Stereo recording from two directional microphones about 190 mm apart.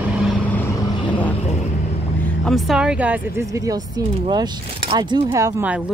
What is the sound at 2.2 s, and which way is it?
Speech, centre (ahead or behind).